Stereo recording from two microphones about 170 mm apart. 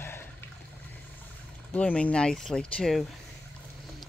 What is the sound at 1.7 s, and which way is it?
Speech, 10° left (ahead or behind).